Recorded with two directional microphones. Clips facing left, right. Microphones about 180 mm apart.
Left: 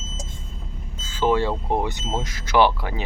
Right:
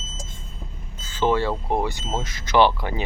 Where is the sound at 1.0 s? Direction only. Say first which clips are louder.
Left 1 dB; 10° left (ahead or behind).